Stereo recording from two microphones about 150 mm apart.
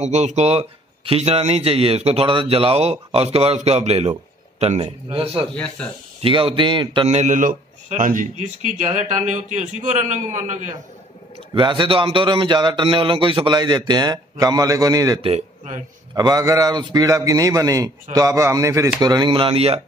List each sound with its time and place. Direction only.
0.0 s a man's voice: 50° right (ahead or behind)
5.5 s speech: 5° left (ahead or behind)
6.2 s a man's voice: 35° right (ahead or behind)
7.1 s a man's voice: 50° right (ahead or behind)
11.5 s a man's voice: 35° right (ahead or behind)
15.2 s a man's voice: 45° right (ahead or behind)
16.2 s a man's voice: 25° right (ahead or behind); by 19.8 s 40° right (ahead or behind)